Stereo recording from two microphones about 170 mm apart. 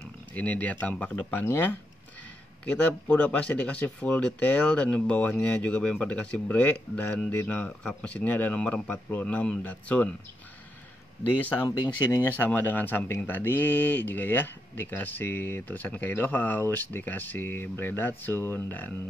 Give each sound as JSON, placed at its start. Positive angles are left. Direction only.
{"t": 0.3, "sound": "speech", "side_deg": 10}
{"t": 11.6, "sound": "speech", "side_deg": 25}
{"t": 12.3, "sound": "speech", "side_deg": 10}